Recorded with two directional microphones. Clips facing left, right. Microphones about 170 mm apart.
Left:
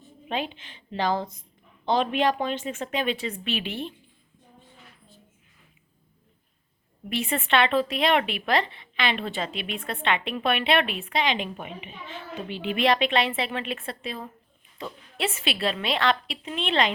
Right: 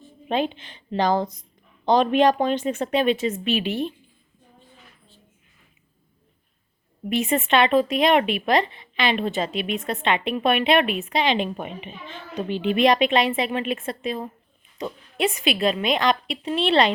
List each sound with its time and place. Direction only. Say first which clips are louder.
0.3 s a woman's voice: right 6 dB; 35° right (ahead or behind)
3.1 s a woman's voice: right 7 dB; 20° right (ahead or behind)
7.1 s a woman's voice: right 4 dB; 20° right (ahead or behind); by 12.2 s 35° right (ahead or behind)
12.7 s a woman's voice: right 4 dB; 20° right (ahead or behind)
16.4 s a woman's voice: right 6 dB; 35° right (ahead or behind)